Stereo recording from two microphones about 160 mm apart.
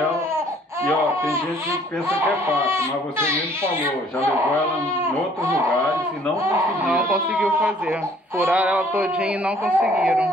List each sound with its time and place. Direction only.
1.2 s speech: 15° right (ahead or behind)
5.4 s speech: 20° right (ahead or behind)
6.9 s speech: 10° right (ahead or behind)
8.4 s speech: 10° right (ahead or behind)